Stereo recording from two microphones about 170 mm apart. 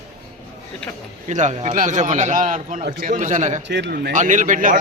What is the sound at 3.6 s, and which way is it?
Speech, 90° right.